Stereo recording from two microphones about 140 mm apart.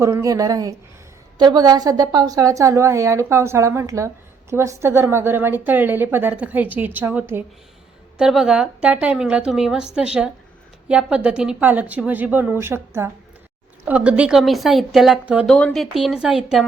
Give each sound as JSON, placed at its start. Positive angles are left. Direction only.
{"t": 0.0, "sound": "a woman's voice", "side_deg": -20}